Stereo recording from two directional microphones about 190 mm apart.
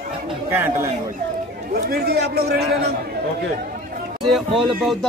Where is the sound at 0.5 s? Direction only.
10° right (ahead or behind).